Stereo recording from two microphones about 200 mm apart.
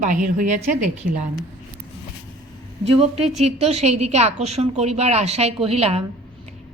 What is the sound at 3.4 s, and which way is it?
A woman's voice, 35° right (ahead or behind).